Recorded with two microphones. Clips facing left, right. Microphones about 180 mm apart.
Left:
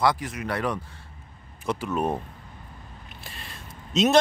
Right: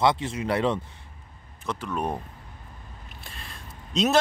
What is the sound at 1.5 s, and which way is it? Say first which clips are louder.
Speech: left 3 dB; 10° left (ahead or behind).